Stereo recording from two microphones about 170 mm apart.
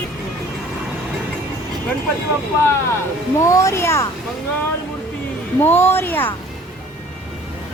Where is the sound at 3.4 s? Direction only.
20° left (ahead or behind).